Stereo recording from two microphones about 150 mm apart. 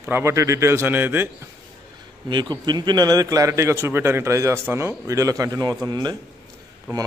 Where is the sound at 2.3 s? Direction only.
30° right (ahead or behind).